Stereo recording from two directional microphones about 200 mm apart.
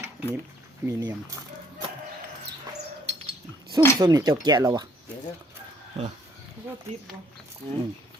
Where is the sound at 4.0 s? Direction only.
20° right (ahead or behind).